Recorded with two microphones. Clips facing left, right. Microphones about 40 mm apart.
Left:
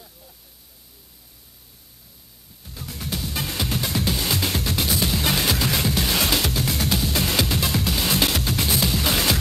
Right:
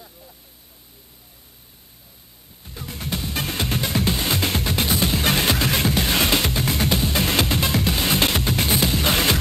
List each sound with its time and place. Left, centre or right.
2.6 s music: centre